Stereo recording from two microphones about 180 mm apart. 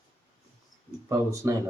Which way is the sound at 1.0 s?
15° right (ahead or behind).